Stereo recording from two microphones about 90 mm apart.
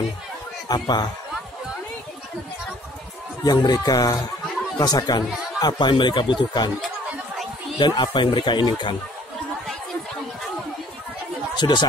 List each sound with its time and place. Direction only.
0.7 s speech: 50° left (ahead or behind)
3.4 s speech: 50° left (ahead or behind)
7.8 s speech: 55° left (ahead or behind)
11.5 s chatter: 55° left (ahead or behind)